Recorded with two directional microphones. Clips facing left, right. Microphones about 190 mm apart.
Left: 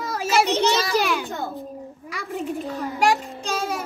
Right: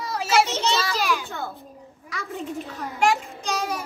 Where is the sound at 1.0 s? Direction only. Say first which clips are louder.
Left 2 dB; 55° left (ahead or behind).